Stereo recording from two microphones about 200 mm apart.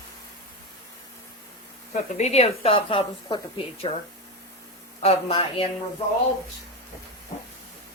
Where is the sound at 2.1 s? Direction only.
35° left (ahead or behind).